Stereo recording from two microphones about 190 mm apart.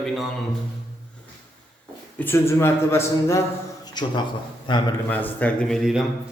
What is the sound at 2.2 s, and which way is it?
A man's voice, 10° left (ahead or behind).